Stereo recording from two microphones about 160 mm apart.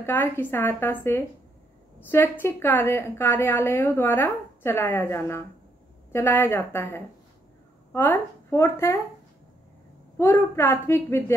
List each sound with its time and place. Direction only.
0.0 s a woman's voice: 15° left (ahead or behind)
10.1 s a woman's voice: 15° left (ahead or behind)